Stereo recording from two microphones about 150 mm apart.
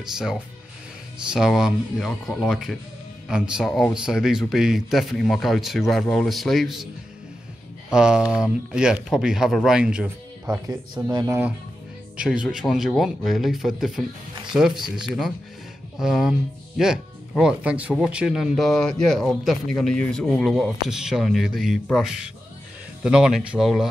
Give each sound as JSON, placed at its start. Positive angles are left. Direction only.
{"t": 1.3, "sound": "speech", "side_deg": -5}
{"t": 7.9, "sound": "speech", "side_deg": -5}
{"t": 11.1, "sound": "speech", "side_deg": -25}
{"t": 12.2, "sound": "speech", "side_deg": -5}
{"t": 16.0, "sound": "speech", "side_deg": -5}